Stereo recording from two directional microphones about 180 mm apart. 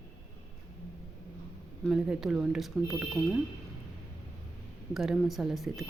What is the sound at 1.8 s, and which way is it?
Speech, 5° right (ahead or behind).